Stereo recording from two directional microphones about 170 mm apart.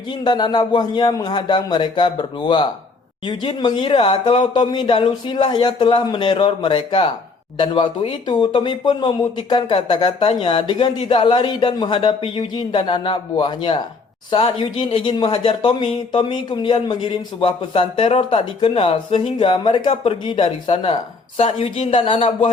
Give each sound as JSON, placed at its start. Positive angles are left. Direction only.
{"t": 0.1, "sound": "speech", "side_deg": 25}